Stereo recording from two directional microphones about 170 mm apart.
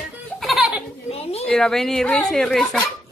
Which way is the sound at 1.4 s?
5° left (ahead or behind).